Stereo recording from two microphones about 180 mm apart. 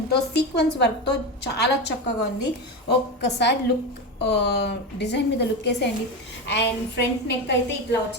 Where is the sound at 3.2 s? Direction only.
70° left (ahead or behind).